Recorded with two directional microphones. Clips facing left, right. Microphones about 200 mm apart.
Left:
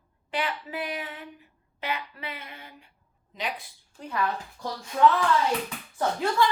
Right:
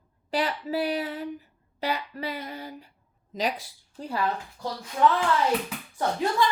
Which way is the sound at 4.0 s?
30° right (ahead or behind).